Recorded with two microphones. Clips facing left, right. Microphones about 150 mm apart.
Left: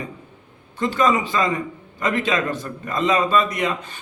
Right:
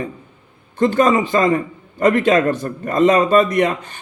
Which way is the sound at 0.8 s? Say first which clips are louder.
Right 5 dB; 50° right (ahead or behind).